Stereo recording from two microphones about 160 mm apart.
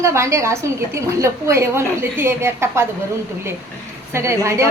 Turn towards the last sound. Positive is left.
turn(degrees=-20)  # may be behind; listen again after turning